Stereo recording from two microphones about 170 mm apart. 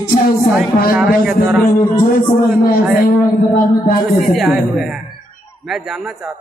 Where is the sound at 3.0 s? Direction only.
55° left (ahead or behind).